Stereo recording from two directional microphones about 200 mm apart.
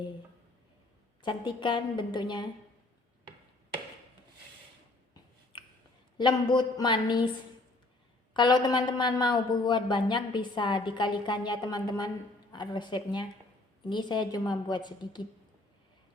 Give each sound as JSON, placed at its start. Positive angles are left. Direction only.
{"t": 1.2, "sound": "a woman's voice", "side_deg": 25}
{"t": 6.1, "sound": "a woman's voice", "side_deg": 20}
{"t": 8.3, "sound": "a woman's voice", "side_deg": 25}